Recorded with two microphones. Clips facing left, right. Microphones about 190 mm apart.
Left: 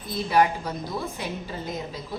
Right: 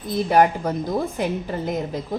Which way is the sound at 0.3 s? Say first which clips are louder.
Right 4 dB; 50° right (ahead or behind).